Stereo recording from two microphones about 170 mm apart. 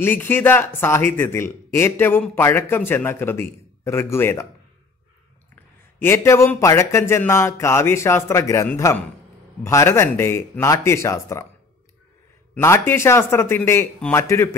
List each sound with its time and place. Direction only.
0.0 s speech: 10° left (ahead or behind)
5.9 s speech: 15° left (ahead or behind)
12.5 s speech: 15° left (ahead or behind)